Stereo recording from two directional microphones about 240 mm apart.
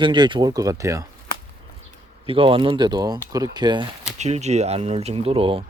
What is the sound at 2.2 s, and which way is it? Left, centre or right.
Speech, right.